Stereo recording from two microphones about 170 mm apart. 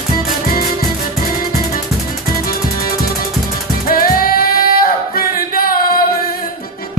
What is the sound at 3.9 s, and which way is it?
Singing, 60° left (ahead or behind).